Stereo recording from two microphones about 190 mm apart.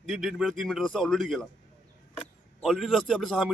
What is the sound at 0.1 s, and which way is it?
Speech, centre (ahead or behind).